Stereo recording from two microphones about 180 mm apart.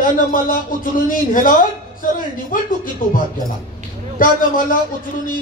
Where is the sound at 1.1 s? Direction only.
50° left (ahead or behind).